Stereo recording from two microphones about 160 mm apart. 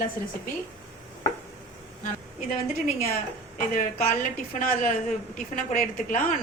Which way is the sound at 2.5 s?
55° left (ahead or behind).